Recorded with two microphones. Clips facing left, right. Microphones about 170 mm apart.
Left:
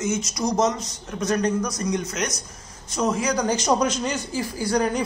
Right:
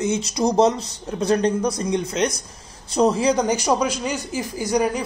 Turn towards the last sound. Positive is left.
turn(degrees=-15)  # may be behind; listen again after turning